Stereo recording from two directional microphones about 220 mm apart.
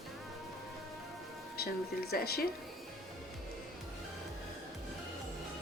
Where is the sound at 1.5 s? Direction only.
45° left (ahead or behind).